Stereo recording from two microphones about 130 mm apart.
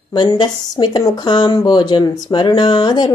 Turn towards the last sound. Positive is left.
turn(degrees=35)  # may be behind; listen again after turning